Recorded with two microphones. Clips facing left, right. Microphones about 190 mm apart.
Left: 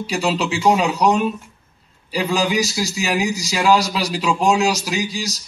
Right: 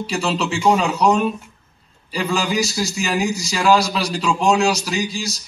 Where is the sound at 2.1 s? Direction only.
20° left (ahead or behind).